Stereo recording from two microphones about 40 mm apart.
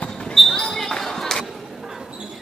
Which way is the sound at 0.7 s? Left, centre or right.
Centre.